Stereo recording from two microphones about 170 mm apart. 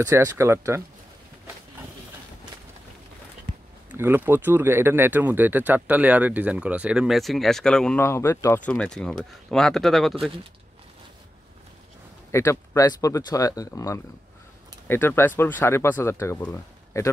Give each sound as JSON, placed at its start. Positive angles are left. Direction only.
{"t": 0.0, "sound": "speech", "side_deg": -20}
{"t": 3.9, "sound": "speech", "side_deg": -10}
{"t": 8.6, "sound": "speech", "side_deg": 5}
{"t": 12.3, "sound": "speech", "side_deg": 15}